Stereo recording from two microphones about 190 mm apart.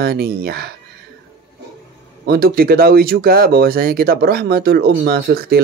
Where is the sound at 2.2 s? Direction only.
55° right (ahead or behind).